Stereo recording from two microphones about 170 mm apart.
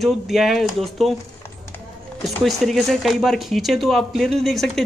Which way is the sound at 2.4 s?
Centre (ahead or behind).